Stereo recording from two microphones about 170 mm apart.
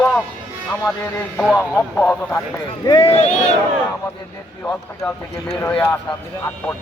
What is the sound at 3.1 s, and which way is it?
Speech, 40° left (ahead or behind).